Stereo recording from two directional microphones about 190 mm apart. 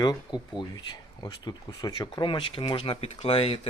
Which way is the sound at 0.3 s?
25° left (ahead or behind).